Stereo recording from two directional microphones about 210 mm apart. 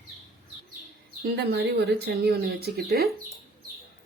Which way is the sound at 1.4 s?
50° right (ahead or behind).